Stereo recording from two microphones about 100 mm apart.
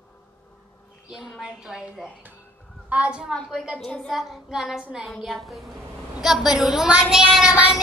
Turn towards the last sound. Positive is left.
turn(degrees=-5)  # may be behind; listen again after turning